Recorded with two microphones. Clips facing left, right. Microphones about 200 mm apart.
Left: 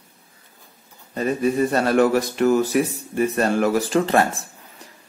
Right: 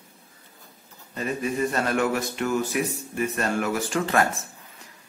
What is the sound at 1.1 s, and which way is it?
Speech, 35° left (ahead or behind).